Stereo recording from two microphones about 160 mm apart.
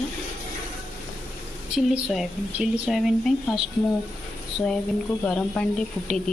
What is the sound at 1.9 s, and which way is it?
Speech, 5° right (ahead or behind).